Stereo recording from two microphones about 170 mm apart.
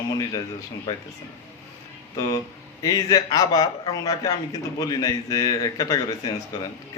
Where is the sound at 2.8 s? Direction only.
20° left (ahead or behind).